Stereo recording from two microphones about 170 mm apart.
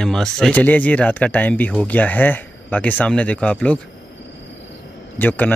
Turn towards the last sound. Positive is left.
turn(degrees=10)  # may be behind; listen again after turning